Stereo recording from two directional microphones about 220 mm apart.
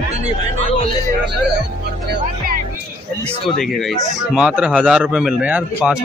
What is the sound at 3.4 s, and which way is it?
Speech, centre (ahead or behind).